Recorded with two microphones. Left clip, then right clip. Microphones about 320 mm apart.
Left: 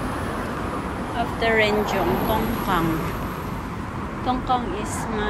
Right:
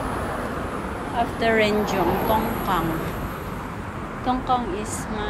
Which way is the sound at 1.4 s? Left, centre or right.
Centre.